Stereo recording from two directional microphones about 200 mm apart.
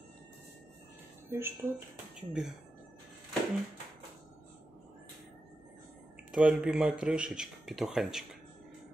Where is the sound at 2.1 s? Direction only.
5° right (ahead or behind).